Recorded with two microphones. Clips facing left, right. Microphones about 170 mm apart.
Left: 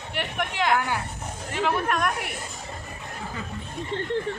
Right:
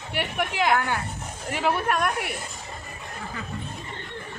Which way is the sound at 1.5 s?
5° right (ahead or behind).